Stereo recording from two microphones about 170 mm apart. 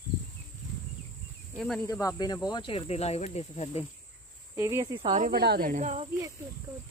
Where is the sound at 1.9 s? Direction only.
20° left (ahead or behind); by 3.8 s 40° left (ahead or behind).